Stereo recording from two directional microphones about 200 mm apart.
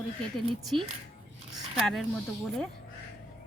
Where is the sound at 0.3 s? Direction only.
Centre (ahead or behind).